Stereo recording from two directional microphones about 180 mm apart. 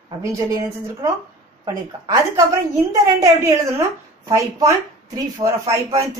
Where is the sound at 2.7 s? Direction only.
15° right (ahead or behind).